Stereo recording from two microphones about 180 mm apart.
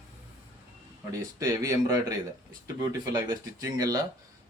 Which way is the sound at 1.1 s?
20° right (ahead or behind).